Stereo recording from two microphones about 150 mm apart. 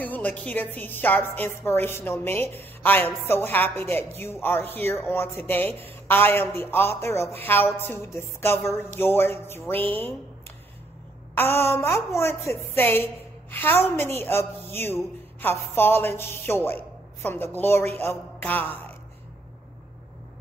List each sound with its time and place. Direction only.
0.0 s speech: 10° left (ahead or behind)
11.3 s speech: 15° left (ahead or behind)